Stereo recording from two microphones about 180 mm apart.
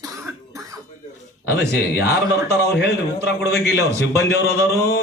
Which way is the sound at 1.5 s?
65° left (ahead or behind).